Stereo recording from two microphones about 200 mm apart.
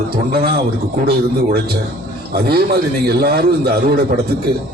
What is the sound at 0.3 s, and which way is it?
A man's voice, 50° right (ahead or behind).